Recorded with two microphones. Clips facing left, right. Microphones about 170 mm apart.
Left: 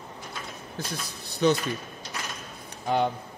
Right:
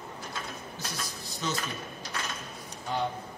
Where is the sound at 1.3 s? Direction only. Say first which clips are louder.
Left 12 dB; 65° left (ahead or behind).